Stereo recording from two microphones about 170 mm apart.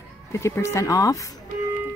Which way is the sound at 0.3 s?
15° left (ahead or behind).